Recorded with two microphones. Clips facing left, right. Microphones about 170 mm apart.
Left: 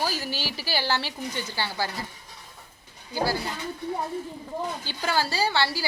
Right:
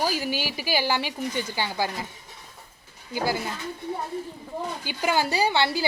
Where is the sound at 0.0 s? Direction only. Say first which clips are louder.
Right 3 dB; 15° right (ahead or behind).